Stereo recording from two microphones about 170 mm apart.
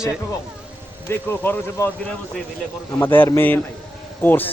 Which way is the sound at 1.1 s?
10° left (ahead or behind).